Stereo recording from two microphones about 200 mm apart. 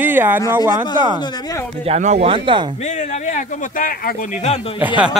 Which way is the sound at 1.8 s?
35° right (ahead or behind).